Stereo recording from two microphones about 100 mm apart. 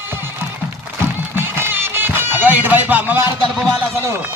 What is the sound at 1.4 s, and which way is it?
Music, 25° right (ahead or behind).